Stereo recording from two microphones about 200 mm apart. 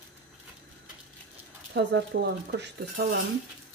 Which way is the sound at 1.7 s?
60° right (ahead or behind).